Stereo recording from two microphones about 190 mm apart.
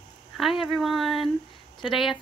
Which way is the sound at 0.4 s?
Centre (ahead or behind).